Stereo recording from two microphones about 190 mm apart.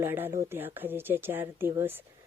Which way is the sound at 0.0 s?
10° right (ahead or behind).